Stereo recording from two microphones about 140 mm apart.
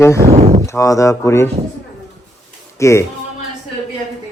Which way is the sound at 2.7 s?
20° left (ahead or behind).